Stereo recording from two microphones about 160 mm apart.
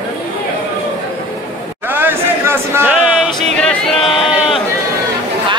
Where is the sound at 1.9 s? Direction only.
15° right (ahead or behind).